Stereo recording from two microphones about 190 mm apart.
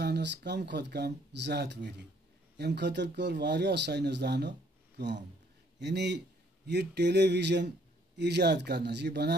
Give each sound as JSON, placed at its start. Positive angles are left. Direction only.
{"t": 0.0, "sound": "a man's voice", "side_deg": -65}